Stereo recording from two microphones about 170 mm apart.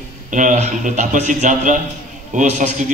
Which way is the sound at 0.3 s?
50° right (ahead or behind).